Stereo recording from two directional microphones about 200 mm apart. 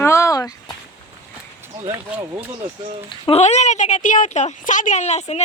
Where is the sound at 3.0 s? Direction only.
25° left (ahead or behind).